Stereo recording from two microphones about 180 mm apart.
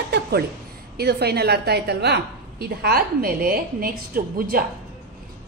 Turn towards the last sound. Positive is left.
turn(degrees=-55)  # may be behind; listen again after turning